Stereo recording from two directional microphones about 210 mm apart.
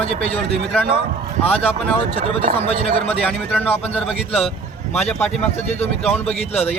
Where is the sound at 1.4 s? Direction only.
25° left (ahead or behind).